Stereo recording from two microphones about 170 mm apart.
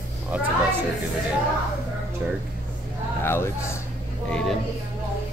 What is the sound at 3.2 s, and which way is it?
Speech, 15° left (ahead or behind).